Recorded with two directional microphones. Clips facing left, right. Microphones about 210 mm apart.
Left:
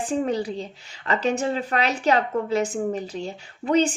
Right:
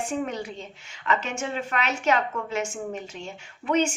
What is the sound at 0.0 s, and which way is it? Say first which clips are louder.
Speech: left 5 dB; 35° left (ahead or behind).